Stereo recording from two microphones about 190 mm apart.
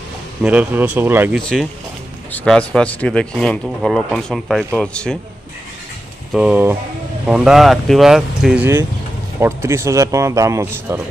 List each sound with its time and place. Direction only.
0.4 s speech: 5° right (ahead or behind)
1.3 s speech: 5° left (ahead or behind)
6.3 s speech: 5° right (ahead or behind)
9.4 s speech: 15° right (ahead or behind)